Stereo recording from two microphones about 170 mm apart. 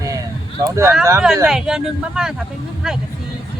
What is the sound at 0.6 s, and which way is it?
Speech, 20° right (ahead or behind).